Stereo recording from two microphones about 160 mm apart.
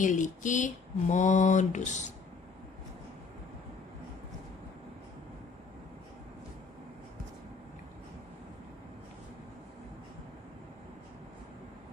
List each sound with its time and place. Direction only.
0.0 s speech: 50° left (ahead or behind)